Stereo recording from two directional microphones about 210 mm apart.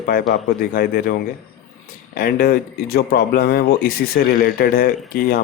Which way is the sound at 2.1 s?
45° left (ahead or behind).